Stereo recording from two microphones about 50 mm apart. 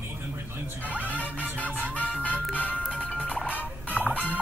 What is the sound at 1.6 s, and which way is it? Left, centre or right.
Music, right.